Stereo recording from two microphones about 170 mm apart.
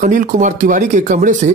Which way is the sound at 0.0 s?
50° right (ahead or behind).